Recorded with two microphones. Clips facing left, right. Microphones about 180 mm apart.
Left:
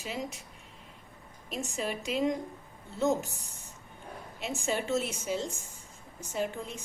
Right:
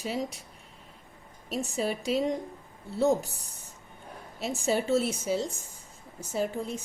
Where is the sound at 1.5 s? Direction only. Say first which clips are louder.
Right 4 dB; 35° right (ahead or behind).